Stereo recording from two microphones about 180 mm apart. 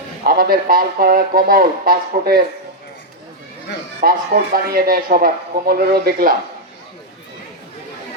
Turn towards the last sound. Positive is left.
turn(degrees=-55)  # may be behind; listen again after turning